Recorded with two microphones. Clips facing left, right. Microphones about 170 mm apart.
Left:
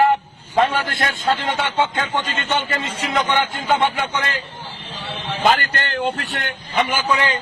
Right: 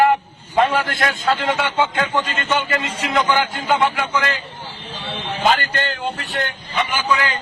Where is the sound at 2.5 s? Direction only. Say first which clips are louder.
Even; 30° left (ahead or behind).